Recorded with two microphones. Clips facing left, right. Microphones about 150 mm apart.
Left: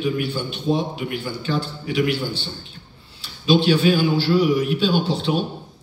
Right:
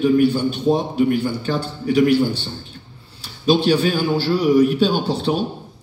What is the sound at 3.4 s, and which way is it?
A man's voice, 45° right (ahead or behind).